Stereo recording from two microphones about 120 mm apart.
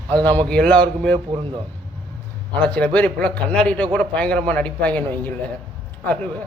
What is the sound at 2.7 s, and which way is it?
A man's voice, 10° left (ahead or behind).